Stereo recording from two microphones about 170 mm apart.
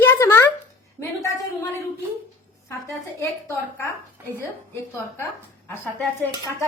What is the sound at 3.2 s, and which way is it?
Speech, 15° left (ahead or behind).